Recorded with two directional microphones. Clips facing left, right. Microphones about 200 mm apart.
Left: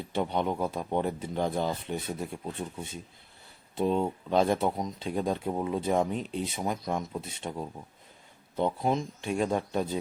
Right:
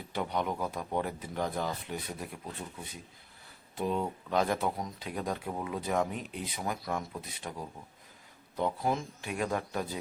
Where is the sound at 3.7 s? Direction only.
25° left (ahead or behind).